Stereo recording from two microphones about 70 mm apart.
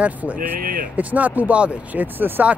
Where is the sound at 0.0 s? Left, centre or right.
Right.